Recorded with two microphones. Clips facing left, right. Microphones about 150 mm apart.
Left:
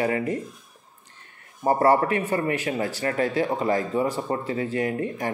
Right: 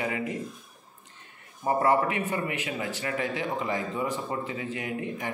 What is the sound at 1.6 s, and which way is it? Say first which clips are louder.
A man's voice: left 4 dB; 40° left (ahead or behind).